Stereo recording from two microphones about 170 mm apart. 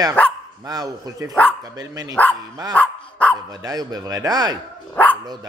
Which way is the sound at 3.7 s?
20° right (ahead or behind).